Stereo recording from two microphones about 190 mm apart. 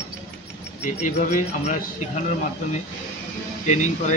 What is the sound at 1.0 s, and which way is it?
Speech, 40° left (ahead or behind).